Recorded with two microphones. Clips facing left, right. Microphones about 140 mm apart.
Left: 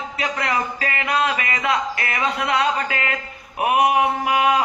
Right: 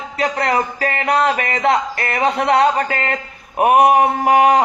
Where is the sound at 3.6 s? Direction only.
45° right (ahead or behind).